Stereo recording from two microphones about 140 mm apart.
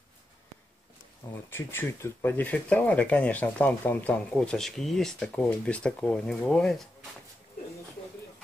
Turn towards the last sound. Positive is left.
turn(degrees=0)  # may be behind; listen again after turning